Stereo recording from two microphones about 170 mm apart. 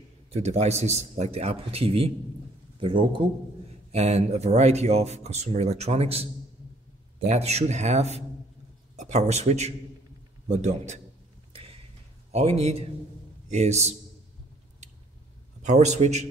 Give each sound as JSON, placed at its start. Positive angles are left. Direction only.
{"t": 0.3, "sound": "speech", "side_deg": -40}
{"t": 3.9, "sound": "a man's voice", "side_deg": -40}
{"t": 11.5, "sound": "a sound", "side_deg": -35}
{"t": 12.3, "sound": "speech", "side_deg": -40}
{"t": 15.6, "sound": "speech", "side_deg": -40}